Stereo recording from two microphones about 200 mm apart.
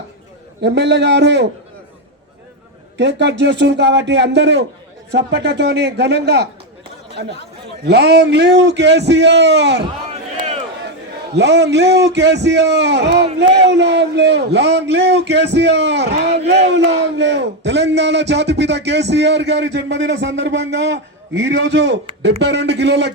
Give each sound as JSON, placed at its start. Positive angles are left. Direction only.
{"t": 0.6, "sound": "speech", "side_deg": -60}
{"t": 3.0, "sound": "speech", "side_deg": -60}
{"t": 7.9, "sound": "speech", "side_deg": -55}
{"t": 10.1, "sound": "a sound", "side_deg": -30}
{"t": 11.3, "sound": "speech", "side_deg": -60}
{"t": 16.2, "sound": "speech", "side_deg": -30}
{"t": 17.0, "sound": "speech", "side_deg": -60}